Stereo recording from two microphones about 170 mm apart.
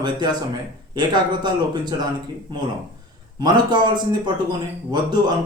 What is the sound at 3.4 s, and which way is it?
A man's voice, 25° right (ahead or behind).